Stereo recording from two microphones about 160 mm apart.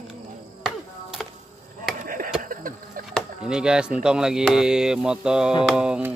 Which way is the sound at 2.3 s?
60° right (ahead or behind).